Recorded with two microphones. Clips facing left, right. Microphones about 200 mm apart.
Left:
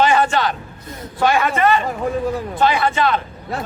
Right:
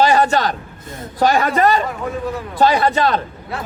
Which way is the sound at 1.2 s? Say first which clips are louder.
Right 2 dB; 40° right (ahead or behind).